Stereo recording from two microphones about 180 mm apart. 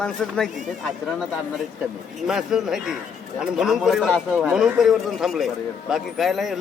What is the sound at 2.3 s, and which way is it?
A man's voice, centre (ahead or behind).